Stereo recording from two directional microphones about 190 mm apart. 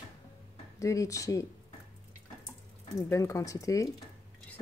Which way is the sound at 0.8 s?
15° left (ahead or behind).